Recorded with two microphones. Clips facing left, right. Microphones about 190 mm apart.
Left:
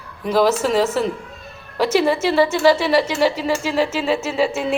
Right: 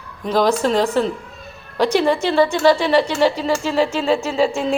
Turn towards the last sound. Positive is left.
turn(degrees=5)  # may be behind; listen again after turning